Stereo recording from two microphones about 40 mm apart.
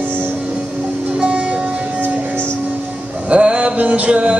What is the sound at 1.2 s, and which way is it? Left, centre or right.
Music, right.